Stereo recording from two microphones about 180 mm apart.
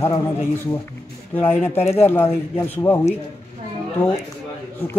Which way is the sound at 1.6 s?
15° left (ahead or behind).